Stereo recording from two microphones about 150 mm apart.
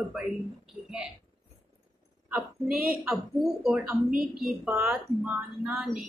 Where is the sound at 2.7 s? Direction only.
75° right (ahead or behind).